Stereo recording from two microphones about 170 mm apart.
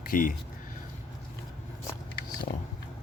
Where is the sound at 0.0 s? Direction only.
55° left (ahead or behind).